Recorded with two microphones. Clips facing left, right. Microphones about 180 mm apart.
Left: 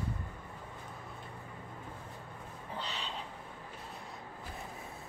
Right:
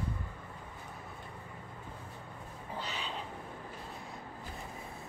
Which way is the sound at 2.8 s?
5° right (ahead or behind).